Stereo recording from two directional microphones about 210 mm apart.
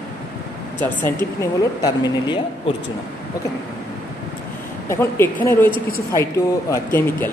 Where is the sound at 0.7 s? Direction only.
10° left (ahead or behind).